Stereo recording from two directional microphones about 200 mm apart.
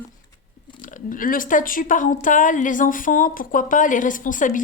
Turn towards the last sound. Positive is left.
turn(degrees=40)  # may be behind; listen again after turning